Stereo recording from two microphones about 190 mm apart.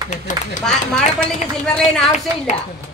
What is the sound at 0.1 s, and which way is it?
Speech, 40° left (ahead or behind).